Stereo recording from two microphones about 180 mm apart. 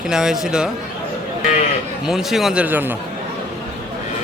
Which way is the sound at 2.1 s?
Centre (ahead or behind).